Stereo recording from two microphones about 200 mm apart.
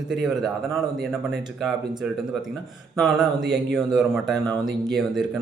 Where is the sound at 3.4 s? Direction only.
60° right (ahead or behind).